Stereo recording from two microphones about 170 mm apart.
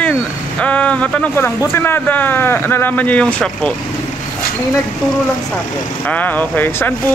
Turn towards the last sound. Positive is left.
turn(degrees=10)  # may be behind; listen again after turning